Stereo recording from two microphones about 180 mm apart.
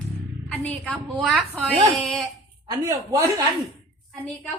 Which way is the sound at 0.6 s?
5° left (ahead or behind).